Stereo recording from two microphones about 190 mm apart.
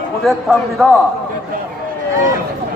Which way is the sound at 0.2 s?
Centre (ahead or behind).